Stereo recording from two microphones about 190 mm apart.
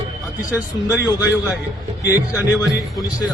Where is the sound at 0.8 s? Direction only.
20° left (ahead or behind).